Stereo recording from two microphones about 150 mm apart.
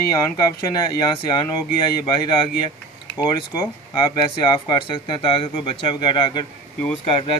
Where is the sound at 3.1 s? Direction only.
25° left (ahead or behind).